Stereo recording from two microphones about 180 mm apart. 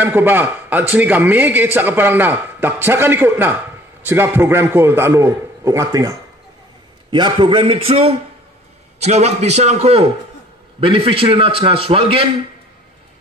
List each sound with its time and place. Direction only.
0.0 s a man's voice: 10° right (ahead or behind); by 12.3 s 30° right (ahead or behind)